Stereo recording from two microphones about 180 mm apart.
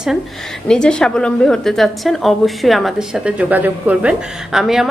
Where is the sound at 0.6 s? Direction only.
5° left (ahead or behind).